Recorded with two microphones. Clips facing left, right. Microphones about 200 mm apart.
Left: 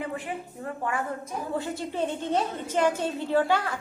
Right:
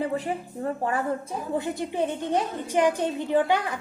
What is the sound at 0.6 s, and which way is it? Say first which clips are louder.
Speech: right 4 dB; 35° right (ahead or behind).